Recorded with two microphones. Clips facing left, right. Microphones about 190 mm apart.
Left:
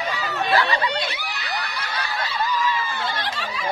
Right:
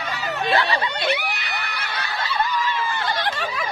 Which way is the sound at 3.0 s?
55° right (ahead or behind).